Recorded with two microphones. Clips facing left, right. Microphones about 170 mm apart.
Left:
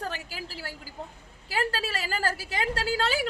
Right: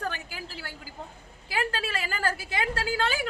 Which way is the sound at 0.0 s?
35° left (ahead or behind).